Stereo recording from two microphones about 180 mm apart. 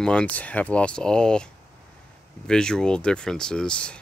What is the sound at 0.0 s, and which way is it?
Speech, 5° left (ahead or behind).